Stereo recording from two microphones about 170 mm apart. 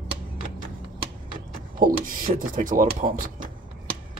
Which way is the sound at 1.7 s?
55° right (ahead or behind).